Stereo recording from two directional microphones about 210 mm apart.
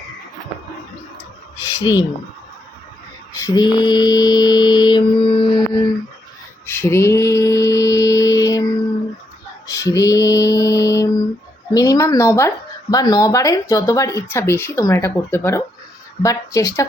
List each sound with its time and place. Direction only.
1.8 s speech: 20° left (ahead or behind)
3.3 s mantra: 20° left (ahead or behind)
6.7 s mantra: 10° left (ahead or behind)
9.6 s mantra: 15° left (ahead or behind)
11.7 s speech: 15° left (ahead or behind)